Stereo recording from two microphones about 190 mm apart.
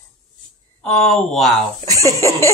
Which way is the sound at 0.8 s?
5° left (ahead or behind).